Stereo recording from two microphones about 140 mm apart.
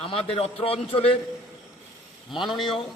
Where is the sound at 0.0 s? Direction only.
45° left (ahead or behind).